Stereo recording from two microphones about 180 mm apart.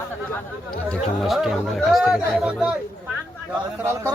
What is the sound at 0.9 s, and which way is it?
Speech, centre (ahead or behind).